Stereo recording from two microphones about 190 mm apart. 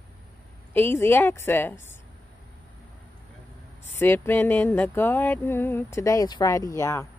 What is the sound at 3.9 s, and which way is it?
Speech, 10° left (ahead or behind).